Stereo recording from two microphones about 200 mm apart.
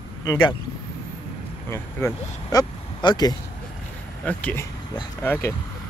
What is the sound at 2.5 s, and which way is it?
Speech, 20° left (ahead or behind).